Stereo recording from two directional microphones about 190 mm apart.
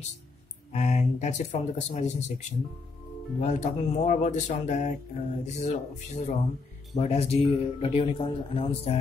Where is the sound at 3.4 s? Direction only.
40° left (ahead or behind).